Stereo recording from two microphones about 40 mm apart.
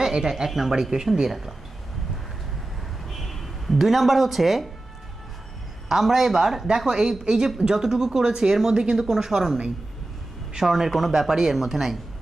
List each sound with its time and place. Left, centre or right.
0.0 s speech: centre
3.1 s speech: centre
5.9 s speech: centre
10.6 s speech: centre